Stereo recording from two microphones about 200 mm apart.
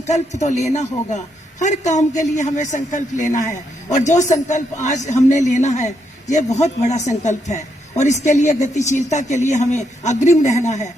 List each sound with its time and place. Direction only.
0.1 s a man's voice: 35° left (ahead or behind)